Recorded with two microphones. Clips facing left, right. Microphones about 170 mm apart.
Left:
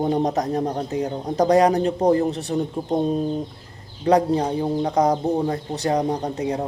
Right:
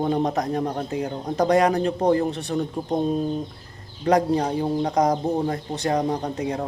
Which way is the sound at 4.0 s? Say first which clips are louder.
Left 2 dB; 30° left (ahead or behind).